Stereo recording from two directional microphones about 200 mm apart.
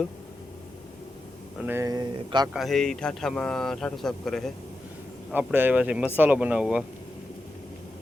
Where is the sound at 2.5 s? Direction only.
Centre (ahead or behind).